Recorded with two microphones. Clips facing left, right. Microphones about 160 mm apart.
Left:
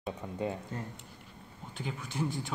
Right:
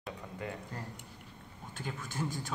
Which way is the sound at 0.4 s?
20° left (ahead or behind).